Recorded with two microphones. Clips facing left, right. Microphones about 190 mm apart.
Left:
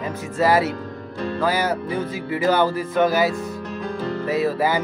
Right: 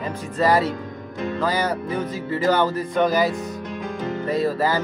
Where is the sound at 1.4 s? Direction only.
10° left (ahead or behind).